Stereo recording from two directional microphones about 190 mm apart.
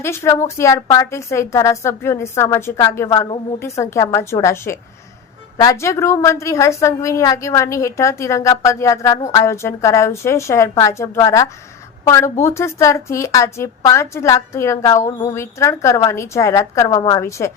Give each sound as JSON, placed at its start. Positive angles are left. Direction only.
{"t": 0.0, "sound": "a woman's voice", "side_deg": 15}